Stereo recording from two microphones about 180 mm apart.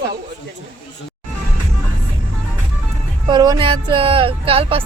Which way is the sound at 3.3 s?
25° right (ahead or behind).